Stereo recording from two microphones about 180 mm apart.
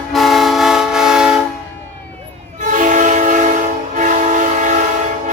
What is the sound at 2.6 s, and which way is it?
Train, 45° right (ahead or behind).